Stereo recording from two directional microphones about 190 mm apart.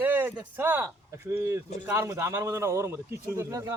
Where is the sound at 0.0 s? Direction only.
10° right (ahead or behind).